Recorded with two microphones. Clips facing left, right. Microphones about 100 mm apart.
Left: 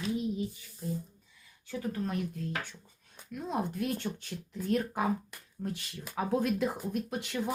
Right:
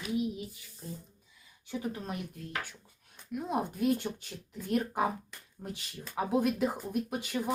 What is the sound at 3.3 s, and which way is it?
Speech, 15° right (ahead or behind).